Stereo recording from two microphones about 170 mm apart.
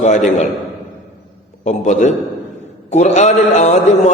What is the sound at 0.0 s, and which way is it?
Speech, 40° left (ahead or behind).